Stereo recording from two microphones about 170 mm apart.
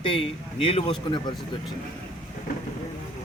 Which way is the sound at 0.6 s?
35° left (ahead or behind).